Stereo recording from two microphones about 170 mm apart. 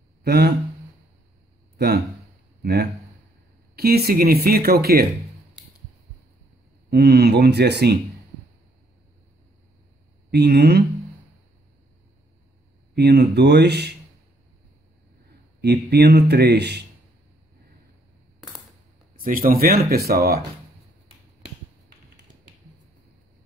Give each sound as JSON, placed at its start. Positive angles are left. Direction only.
{"t": 0.2, "sound": "speech", "side_deg": -70}
{"t": 2.6, "sound": "a sound", "side_deg": -75}
{"t": 3.7, "sound": "speech", "side_deg": -65}
{"t": 6.9, "sound": "speech", "side_deg": -70}
{"t": 10.3, "sound": "speech", "side_deg": -75}
{"t": 12.9, "sound": "speech", "side_deg": -75}
{"t": 15.6, "sound": "speech", "side_deg": -75}
{"t": 19.1, "sound": "speech", "side_deg": -55}